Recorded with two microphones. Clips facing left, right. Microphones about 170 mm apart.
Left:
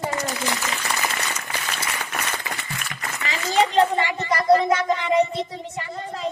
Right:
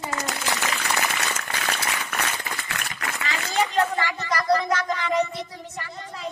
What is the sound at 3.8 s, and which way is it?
Speech, 25° left (ahead or behind).